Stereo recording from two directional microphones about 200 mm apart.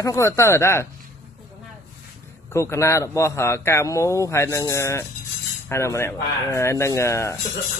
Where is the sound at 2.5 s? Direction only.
15° left (ahead or behind).